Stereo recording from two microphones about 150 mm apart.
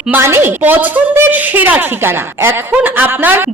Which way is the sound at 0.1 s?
15° right (ahead or behind).